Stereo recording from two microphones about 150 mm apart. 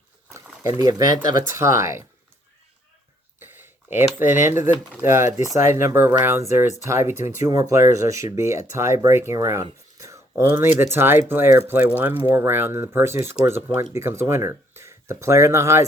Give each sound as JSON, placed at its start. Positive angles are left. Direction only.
{"t": 0.8, "sound": "speech", "side_deg": -25}
{"t": 3.4, "sound": "a sound", "side_deg": -15}
{"t": 4.2, "sound": "speech", "side_deg": -15}